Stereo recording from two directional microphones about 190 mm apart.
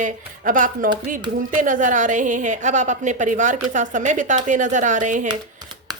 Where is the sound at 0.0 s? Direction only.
45° right (ahead or behind).